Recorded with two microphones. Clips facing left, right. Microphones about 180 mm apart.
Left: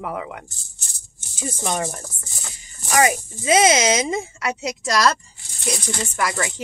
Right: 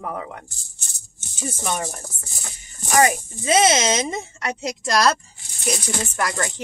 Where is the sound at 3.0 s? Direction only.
10° left (ahead or behind).